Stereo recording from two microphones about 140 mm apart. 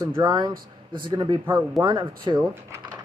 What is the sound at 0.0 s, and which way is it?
Speech, 25° right (ahead or behind).